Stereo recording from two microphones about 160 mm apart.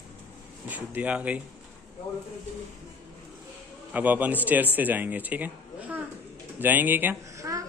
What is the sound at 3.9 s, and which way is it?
Speech, 10° right (ahead or behind).